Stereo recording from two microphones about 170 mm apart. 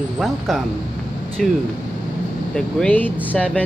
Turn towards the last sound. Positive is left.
turn(degrees=10)  # may be behind; listen again after turning